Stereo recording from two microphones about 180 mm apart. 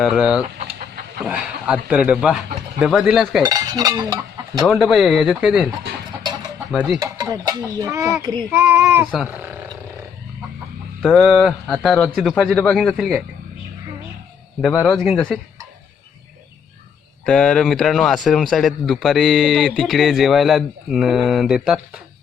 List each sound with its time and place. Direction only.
0.0 s speech: 5° right (ahead or behind)
3.4 s cutlery: 20° right (ahead or behind)
4.6 s speech: centre (ahead or behind)
7.0 s child singing: 20° right (ahead or behind)
11.0 s speech: centre (ahead or behind)
14.6 s speech: 5° left (ahead or behind)
17.2 s speech: 5° left (ahead or behind)